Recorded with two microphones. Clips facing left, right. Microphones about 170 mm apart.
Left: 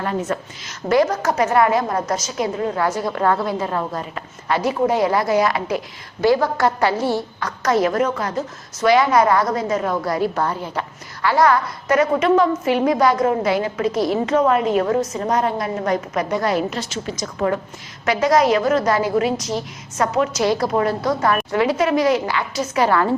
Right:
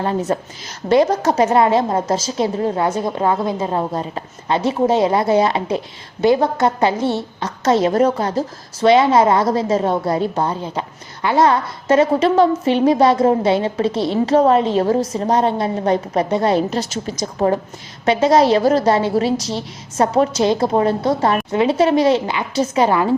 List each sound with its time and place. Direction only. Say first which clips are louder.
0.0 s a woman's voice: right 3 dB; 30° right (ahead or behind)